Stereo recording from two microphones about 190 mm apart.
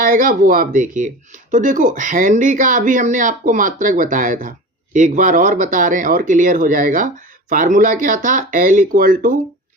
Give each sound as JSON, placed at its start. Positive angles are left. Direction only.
{"t": 0.0, "sound": "speech", "side_deg": -45}